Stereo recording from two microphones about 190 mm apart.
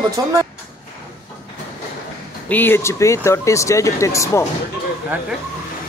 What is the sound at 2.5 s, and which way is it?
Speech, 10° left (ahead or behind).